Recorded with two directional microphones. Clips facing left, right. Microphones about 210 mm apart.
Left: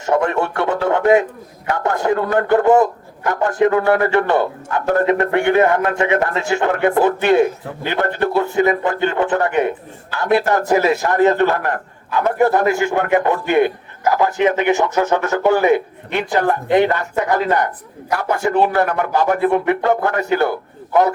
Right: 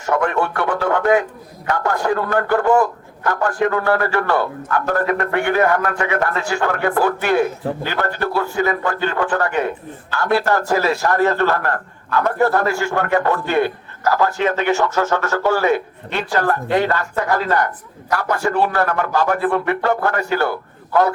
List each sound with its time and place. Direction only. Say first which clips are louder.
0.0 s a man's voice: left 2 dB; 25° left (ahead or behind)